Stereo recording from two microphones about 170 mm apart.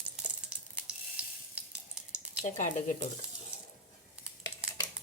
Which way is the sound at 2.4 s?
45° left (ahead or behind).